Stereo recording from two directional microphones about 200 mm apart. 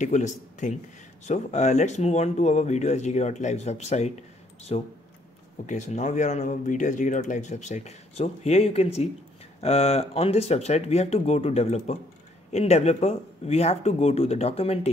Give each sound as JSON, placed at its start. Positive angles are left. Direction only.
{"t": 0.0, "sound": "speech", "side_deg": 40}